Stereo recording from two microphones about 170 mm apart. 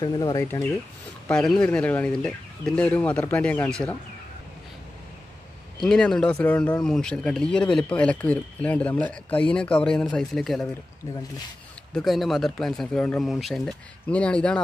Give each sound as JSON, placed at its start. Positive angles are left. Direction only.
{"t": 0.0, "sound": "speech", "side_deg": 25}
{"t": 1.2, "sound": "speech", "side_deg": 5}
{"t": 5.8, "sound": "speech", "side_deg": 5}
{"t": 11.9, "sound": "speech", "side_deg": 0}